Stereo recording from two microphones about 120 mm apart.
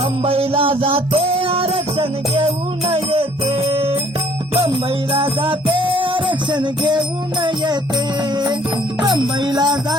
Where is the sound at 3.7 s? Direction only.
55° right (ahead or behind).